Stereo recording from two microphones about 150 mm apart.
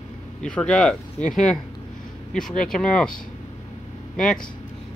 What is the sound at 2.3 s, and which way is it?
Speech, 5° left (ahead or behind).